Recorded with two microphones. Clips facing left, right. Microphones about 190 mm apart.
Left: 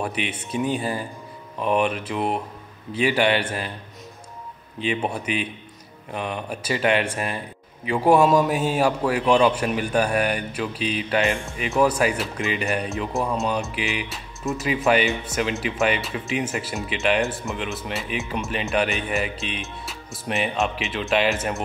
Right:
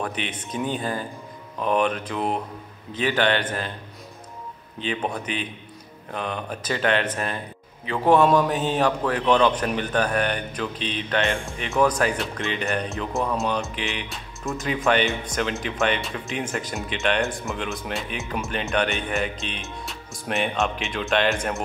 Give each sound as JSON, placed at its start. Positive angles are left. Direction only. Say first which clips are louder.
{"t": 0.0, "sound": "a man's voice", "louder": "left 2 dB", "side_deg": 10}
{"t": 4.7, "sound": "a man's voice", "louder": "left 2 dB", "side_deg": 10}